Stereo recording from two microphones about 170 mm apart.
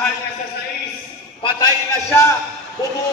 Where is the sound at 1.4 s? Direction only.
20° left (ahead or behind).